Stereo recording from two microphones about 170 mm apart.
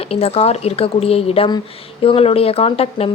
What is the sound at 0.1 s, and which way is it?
A woman's voice, 35° left (ahead or behind).